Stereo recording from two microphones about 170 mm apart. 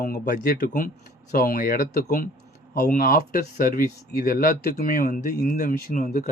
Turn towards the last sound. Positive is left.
turn(degrees=55)  # may be behind; listen again after turning